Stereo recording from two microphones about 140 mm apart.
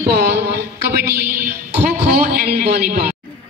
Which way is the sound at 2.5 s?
90° right.